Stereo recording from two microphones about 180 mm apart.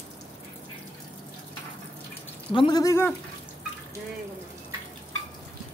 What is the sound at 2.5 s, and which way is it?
Speech, 25° left (ahead or behind).